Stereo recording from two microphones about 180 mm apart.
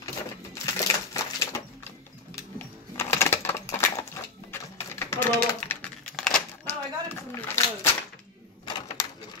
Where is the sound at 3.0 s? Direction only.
15° left (ahead or behind).